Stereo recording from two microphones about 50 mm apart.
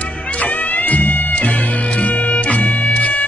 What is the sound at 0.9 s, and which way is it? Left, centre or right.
Music, left.